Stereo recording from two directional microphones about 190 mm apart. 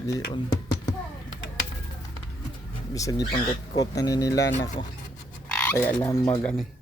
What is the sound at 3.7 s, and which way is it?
Speech, 20° left (ahead or behind).